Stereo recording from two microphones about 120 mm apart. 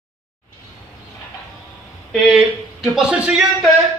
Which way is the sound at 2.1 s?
Centre (ahead or behind).